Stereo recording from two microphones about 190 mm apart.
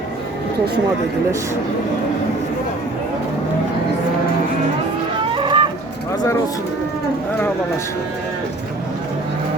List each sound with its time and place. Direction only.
5.3 s livestock: 25° right (ahead or behind)